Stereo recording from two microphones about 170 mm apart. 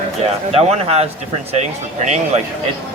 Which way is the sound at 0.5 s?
35° right (ahead or behind).